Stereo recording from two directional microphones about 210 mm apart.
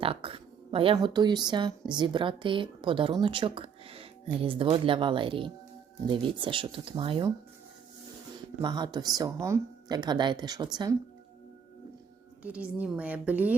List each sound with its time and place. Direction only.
0.0 s speech: 25° right (ahead or behind)
8.6 s speech: 20° right (ahead or behind)
12.4 s a woman's voice: 5° right (ahead or behind)